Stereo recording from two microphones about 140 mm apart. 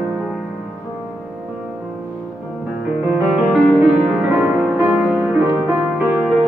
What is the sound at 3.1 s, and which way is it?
Music, 5° right (ahead or behind).